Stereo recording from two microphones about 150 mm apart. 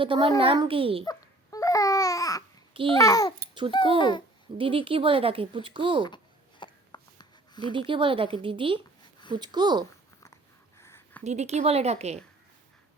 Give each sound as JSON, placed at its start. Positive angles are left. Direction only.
{"t": 0.0, "sound": "speech", "side_deg": -35}
{"t": 1.0, "sound": "babbling", "side_deg": 25}
{"t": 2.7, "sound": "speech", "side_deg": -35}
{"t": 3.0, "sound": "a child's voice", "side_deg": 25}
{"t": 4.5, "sound": "speech", "side_deg": -35}
{"t": 6.6, "sound": "a sound", "side_deg": 30}
{"t": 7.7, "sound": "speech", "side_deg": -35}
{"t": 10.8, "sound": "a sound", "side_deg": 15}
{"t": 11.2, "sound": "a woman's voice", "side_deg": -50}